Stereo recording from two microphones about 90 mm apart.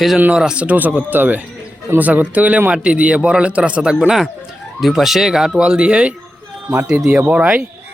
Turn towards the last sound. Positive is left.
turn(degrees=-15)  # may be behind; listen again after turning